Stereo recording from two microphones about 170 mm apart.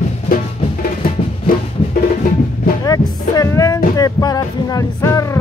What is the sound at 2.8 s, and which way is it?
Music, 20° left (ahead or behind).